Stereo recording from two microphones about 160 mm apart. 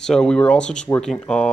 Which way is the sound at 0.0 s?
5° left (ahead or behind).